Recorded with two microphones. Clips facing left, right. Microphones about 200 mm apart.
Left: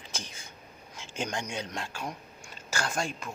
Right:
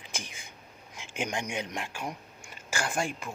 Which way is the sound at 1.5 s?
15° right (ahead or behind).